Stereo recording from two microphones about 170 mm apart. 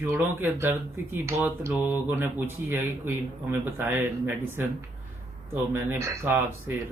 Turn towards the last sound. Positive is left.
turn(degrees=-15)  # may be behind; listen again after turning